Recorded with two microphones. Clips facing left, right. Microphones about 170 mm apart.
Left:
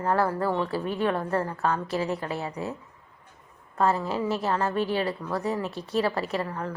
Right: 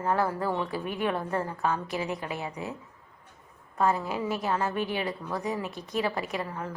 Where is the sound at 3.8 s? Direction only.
10° right (ahead or behind).